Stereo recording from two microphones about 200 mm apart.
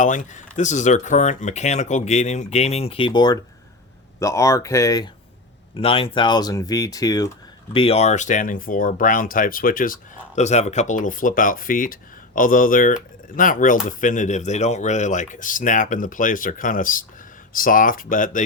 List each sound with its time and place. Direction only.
0.0 s speech: 40° left (ahead or behind); by 5.0 s 15° left (ahead or behind)
5.7 s speech: 30° left (ahead or behind)
7.7 s speech: 30° left (ahead or behind)